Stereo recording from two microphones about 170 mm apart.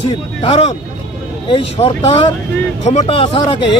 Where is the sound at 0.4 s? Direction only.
40° left (ahead or behind).